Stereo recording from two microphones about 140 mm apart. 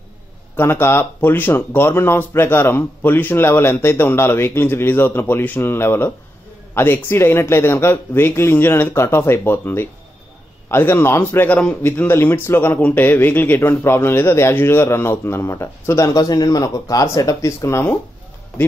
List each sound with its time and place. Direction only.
0.6 s speech: 15° left (ahead or behind)